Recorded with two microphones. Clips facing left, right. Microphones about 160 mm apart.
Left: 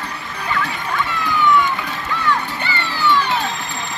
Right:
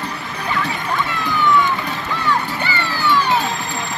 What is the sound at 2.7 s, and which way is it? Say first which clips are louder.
Music: left 3 dB; 10° right (ahead or behind).